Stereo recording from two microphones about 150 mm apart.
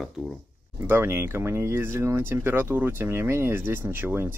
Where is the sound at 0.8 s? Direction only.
15° right (ahead or behind).